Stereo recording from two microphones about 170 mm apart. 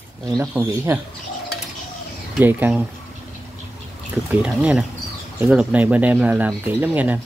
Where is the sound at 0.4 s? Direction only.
15° right (ahead or behind).